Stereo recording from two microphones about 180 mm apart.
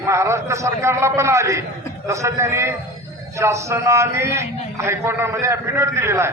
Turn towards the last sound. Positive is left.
turn(degrees=-15)  # may be behind; listen again after turning